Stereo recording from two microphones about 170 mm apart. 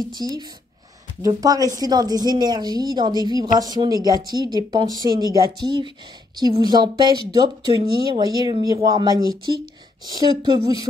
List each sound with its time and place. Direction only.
0.1 s speech: 25° right (ahead or behind)